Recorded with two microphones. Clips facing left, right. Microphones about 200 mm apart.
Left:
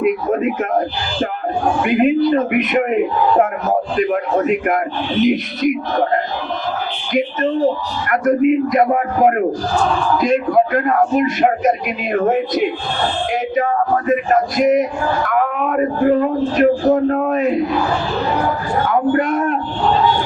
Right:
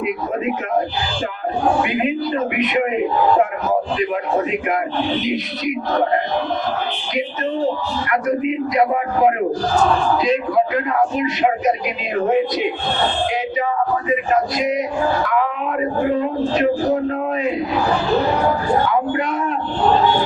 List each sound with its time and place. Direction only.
0.0 s speech: 50° left (ahead or behind)
1.8 s speech: 50° left (ahead or behind)
8.1 s speech: 50° left (ahead or behind)
13.6 s speech: 50° left (ahead or behind)
18.9 s speech: 50° left (ahead or behind)